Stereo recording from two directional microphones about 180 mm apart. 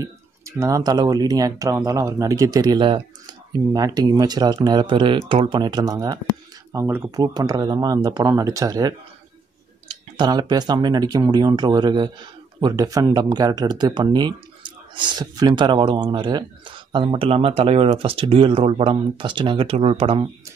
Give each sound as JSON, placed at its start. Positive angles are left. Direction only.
{"t": 0.0, "sound": "speech", "side_deg": -15}
{"t": 10.1, "sound": "speech", "side_deg": -25}